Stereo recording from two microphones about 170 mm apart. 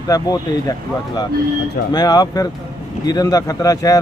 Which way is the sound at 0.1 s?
20° left (ahead or behind).